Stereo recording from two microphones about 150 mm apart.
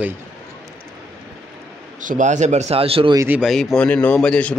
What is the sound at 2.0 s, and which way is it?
Speech, 60° right (ahead or behind).